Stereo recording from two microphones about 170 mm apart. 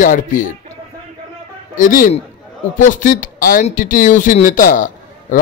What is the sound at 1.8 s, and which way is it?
A man's voice, 55° left (ahead or behind).